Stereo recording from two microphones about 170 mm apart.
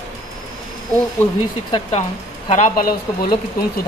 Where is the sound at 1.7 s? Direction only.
35° left (ahead or behind).